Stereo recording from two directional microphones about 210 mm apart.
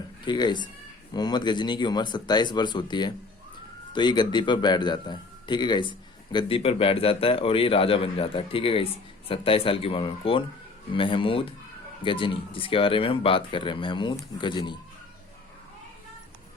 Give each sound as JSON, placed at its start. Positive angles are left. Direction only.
{"t": 0.3, "sound": "a man's voice", "side_deg": 20}